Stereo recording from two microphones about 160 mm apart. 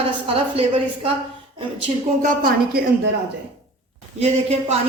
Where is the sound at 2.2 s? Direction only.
60° right (ahead or behind).